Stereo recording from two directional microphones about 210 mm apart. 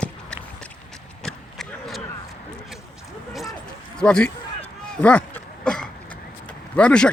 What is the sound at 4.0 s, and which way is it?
Speech, 5° left (ahead or behind).